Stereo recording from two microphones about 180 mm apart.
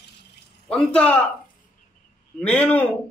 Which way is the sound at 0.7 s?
5° left (ahead or behind).